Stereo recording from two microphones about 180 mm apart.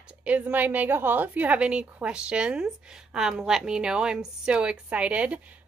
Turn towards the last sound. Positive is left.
turn(degrees=-10)  # may be behind; listen again after turning